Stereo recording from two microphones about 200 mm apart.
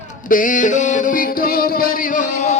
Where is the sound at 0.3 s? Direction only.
40° left (ahead or behind).